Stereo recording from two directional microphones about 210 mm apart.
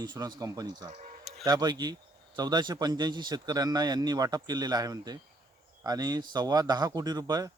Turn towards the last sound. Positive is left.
turn(degrees=-20)  # may be behind; listen again after turning